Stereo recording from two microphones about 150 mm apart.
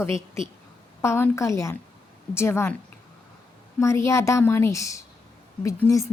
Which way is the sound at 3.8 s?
20° left (ahead or behind).